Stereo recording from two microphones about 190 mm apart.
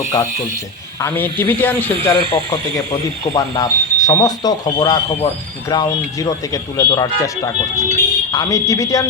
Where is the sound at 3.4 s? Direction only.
20° left (ahead or behind).